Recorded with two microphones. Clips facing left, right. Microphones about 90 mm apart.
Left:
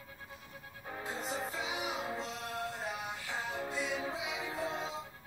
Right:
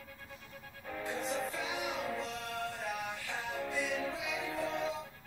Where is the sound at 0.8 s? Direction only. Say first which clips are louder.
Right 2 dB; 30° left (ahead or behind).